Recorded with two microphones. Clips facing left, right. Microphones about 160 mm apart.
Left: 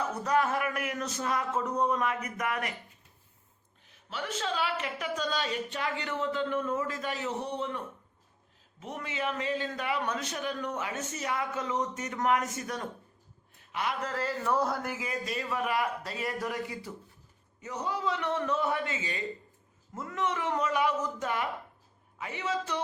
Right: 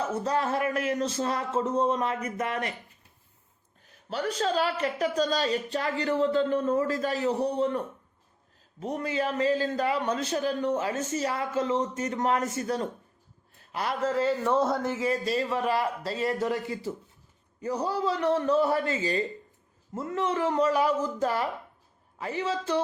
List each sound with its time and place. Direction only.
0.0 s speech: 30° right (ahead or behind)
3.8 s a man's voice: 40° right (ahead or behind)
8.8 s a man's voice: 35° right (ahead or behind)
14.3 s speech: 25° right (ahead or behind)
14.7 s speech: 5° left (ahead or behind)
14.9 s a man's voice: 30° right (ahead or behind)